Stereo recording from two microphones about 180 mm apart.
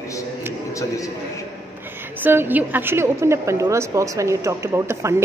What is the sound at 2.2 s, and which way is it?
A woman's voice, 10° right (ahead or behind).